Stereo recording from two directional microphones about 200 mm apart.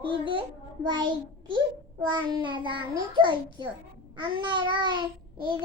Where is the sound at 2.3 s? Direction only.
20° right (ahead or behind).